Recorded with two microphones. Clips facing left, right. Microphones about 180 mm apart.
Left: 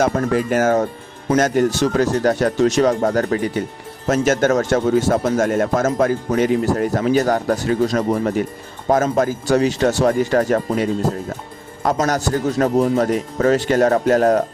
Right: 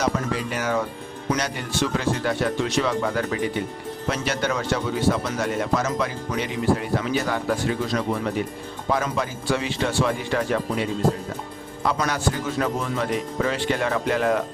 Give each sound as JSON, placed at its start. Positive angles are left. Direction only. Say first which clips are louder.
{"t": 0.0, "sound": "speech", "louder": "left 7 dB", "side_deg": 50}
{"t": 11.9, "sound": "speech", "louder": "left 6 dB", "side_deg": 45}